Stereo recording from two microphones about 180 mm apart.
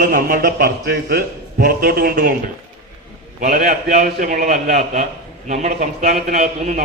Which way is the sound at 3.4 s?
45° right (ahead or behind).